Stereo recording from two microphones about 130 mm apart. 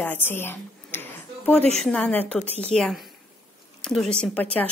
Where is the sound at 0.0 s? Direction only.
15° left (ahead or behind).